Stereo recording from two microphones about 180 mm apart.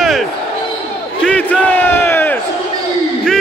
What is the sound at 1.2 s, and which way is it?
Crowd, 10° left (ahead or behind).